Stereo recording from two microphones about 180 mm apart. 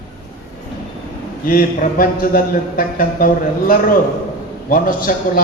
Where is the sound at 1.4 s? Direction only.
50° left (ahead or behind).